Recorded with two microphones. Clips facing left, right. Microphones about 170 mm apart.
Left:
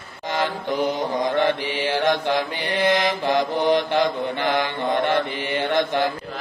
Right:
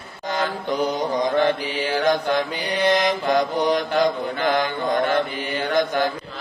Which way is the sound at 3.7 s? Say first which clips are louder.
Even; 25° left (ahead or behind).